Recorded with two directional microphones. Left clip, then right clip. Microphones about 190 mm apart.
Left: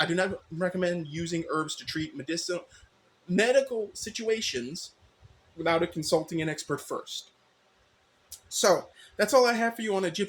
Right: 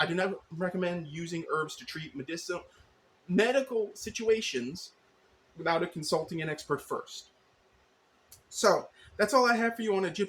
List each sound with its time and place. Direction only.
0.0 s speech: 25° left (ahead or behind)
8.4 s speech: 25° left (ahead or behind)